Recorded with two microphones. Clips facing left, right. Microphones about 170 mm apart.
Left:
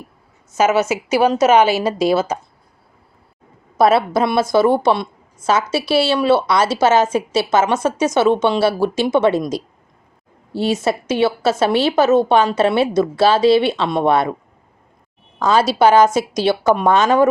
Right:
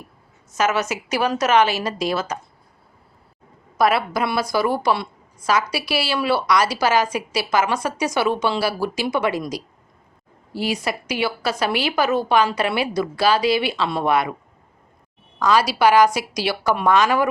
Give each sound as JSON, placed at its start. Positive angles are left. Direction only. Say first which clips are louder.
{"t": 0.5, "sound": "a woman's voice", "louder": "left 6 dB", "side_deg": 25}
{"t": 3.8, "sound": "a woman's voice", "louder": "left 5 dB", "side_deg": 25}
{"t": 15.4, "sound": "a woman's voice", "louder": "left 3 dB", "side_deg": 25}